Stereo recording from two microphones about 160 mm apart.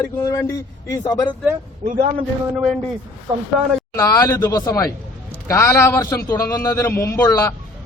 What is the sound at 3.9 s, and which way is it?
A man's voice, 20° left (ahead or behind).